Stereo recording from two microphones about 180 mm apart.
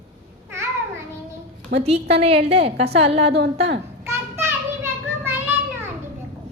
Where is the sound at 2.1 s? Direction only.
35° right (ahead or behind).